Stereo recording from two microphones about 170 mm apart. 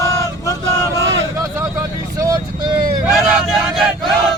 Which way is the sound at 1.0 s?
90° right.